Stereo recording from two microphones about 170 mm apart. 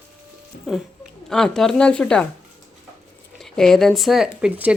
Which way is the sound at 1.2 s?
5° left (ahead or behind).